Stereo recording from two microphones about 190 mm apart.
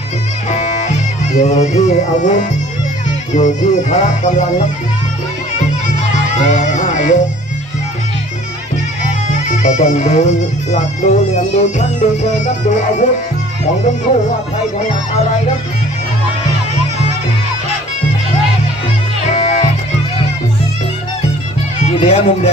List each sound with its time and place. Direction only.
0.5 s music: 35° left (ahead or behind)
6.1 s music: 40° left (ahead or behind)
9.3 s music: 40° left (ahead or behind)
19.3 s music: 35° left (ahead or behind)
21.8 s speech: 35° left (ahead or behind)